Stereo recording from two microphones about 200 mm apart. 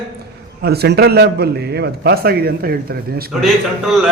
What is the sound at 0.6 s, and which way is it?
A man's voice, 55° right (ahead or behind).